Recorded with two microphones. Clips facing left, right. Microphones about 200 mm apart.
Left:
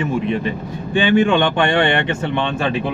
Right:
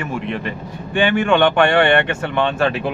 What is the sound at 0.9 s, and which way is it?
Speech, 60° right (ahead or behind).